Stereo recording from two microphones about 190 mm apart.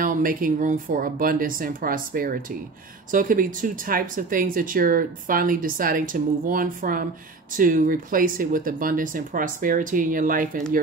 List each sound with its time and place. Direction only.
0.0 s speech: 45° right (ahead or behind)